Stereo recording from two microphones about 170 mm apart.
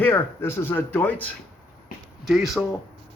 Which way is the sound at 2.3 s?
Centre (ahead or behind).